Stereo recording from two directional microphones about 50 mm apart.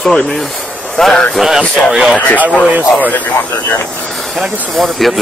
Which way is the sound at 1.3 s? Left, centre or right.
Centre.